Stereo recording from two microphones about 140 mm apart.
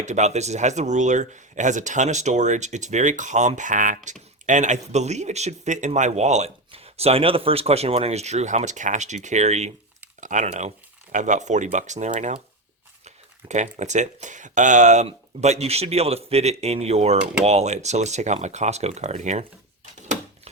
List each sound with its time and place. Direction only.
0.0 s speech: 55° right (ahead or behind)
13.5 s speech: 60° right (ahead or behind)